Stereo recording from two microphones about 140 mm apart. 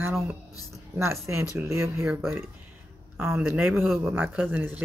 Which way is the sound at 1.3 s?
15° right (ahead or behind).